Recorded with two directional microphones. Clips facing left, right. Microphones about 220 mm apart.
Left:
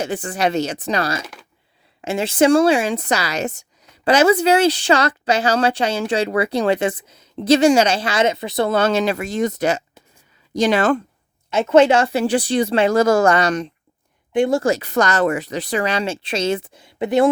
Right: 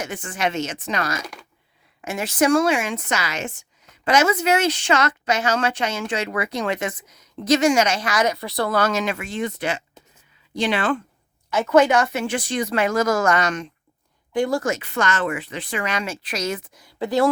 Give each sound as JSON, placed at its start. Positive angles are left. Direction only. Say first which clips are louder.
{"t": 0.0, "sound": "a woman's voice", "louder": "left 5 dB", "side_deg": 35}
{"t": 11.5, "sound": "a woman's voice", "louder": "left 3 dB", "side_deg": 25}
{"t": 14.3, "sound": "a woman's voice", "louder": "left 5 dB", "side_deg": 25}